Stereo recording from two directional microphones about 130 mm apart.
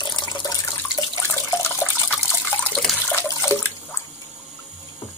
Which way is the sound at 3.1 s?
25° left (ahead or behind).